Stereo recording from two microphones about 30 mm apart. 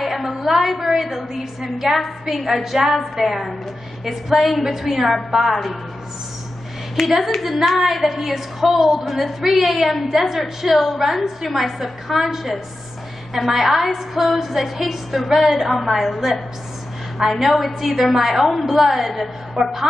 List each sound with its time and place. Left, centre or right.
0.0 s a woman's voice: centre
7.4 s a woman's voice: centre